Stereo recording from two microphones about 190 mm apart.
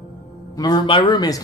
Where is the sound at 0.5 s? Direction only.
20° left (ahead or behind).